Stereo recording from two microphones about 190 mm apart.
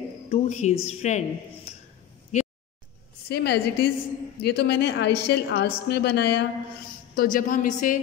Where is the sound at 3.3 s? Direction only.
60° left (ahead or behind).